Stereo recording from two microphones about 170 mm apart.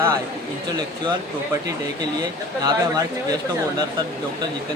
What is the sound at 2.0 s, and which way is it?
Speech, 25° right (ahead or behind).